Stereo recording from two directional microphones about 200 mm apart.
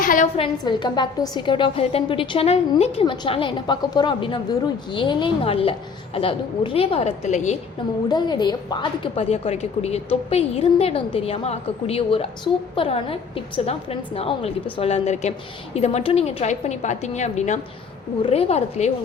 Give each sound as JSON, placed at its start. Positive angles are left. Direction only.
{"t": 0.0, "sound": "a woman's voice", "side_deg": 45}
{"t": 0.3, "sound": "a woman's voice", "side_deg": 25}
{"t": 8.1, "sound": "a woman's voice", "side_deg": 20}